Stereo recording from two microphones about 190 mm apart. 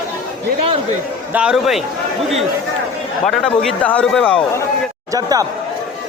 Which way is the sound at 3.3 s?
Centre (ahead or behind).